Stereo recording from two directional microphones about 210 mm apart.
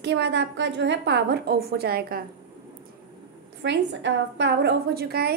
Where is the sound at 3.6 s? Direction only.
55° right (ahead or behind).